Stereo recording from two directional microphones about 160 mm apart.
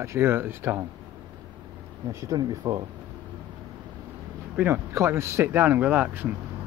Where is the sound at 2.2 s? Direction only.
20° right (ahead or behind).